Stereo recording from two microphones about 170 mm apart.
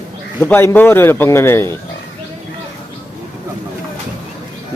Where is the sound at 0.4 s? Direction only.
10° left (ahead or behind).